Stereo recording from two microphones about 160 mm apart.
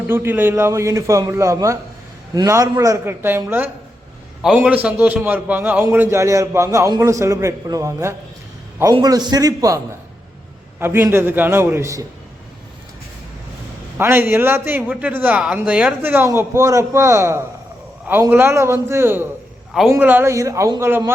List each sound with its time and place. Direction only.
0.1 s a man's voice: 15° right (ahead or behind)
14.0 s a man's voice: 15° right (ahead or behind)